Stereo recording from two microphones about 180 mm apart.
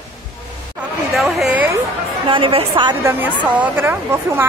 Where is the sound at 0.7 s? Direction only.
Centre (ahead or behind).